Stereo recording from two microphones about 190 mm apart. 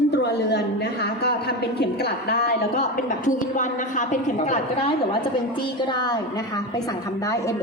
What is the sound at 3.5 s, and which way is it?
A woman's voice, 40° left (ahead or behind).